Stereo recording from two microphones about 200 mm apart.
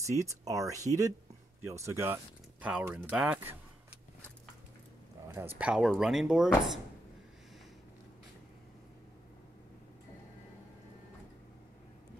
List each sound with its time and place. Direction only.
0.0 s speech: 15° right (ahead or behind)
5.3 s speech: 10° right (ahead or behind)